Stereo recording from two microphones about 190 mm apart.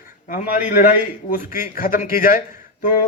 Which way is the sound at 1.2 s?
45° left (ahead or behind).